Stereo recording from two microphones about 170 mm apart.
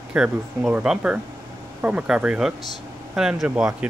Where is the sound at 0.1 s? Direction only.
5° right (ahead or behind).